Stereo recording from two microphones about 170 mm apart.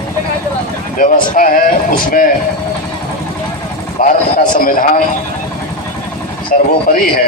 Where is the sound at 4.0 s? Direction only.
55° left (ahead or behind).